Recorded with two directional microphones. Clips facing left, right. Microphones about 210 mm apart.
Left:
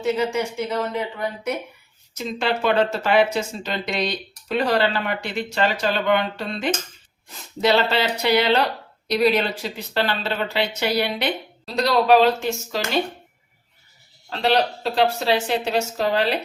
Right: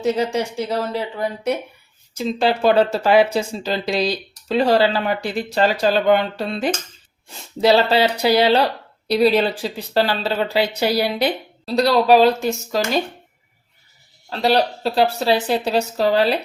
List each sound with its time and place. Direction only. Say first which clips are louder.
0.0 s speech: right 2 dB; 35° right (ahead or behind)
2.1 s speech: right 5 dB; 35° right (ahead or behind)
14.3 s speech: right 2 dB; 35° right (ahead or behind)